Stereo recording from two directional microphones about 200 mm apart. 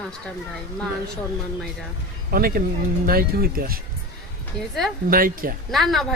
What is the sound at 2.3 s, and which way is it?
Speech, 45° right (ahead or behind).